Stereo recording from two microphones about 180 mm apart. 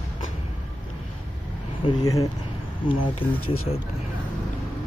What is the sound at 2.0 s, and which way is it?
Speech, 20° left (ahead or behind).